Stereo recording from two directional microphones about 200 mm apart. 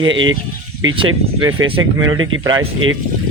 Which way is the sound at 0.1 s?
75° right (ahead or behind).